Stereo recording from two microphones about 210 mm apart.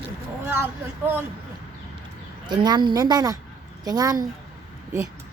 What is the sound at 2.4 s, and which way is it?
A woman's voice, 20° right (ahead or behind).